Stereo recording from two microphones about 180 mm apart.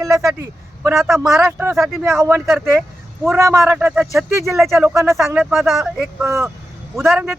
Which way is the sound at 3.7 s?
5° right (ahead or behind).